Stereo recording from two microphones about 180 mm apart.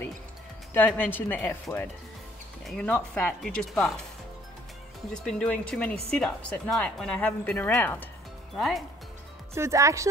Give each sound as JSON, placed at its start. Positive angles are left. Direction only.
{"t": 0.7, "sound": "speech", "side_deg": 10}
{"t": 5.1, "sound": "speech", "side_deg": 5}
{"t": 9.5, "sound": "speech", "side_deg": -15}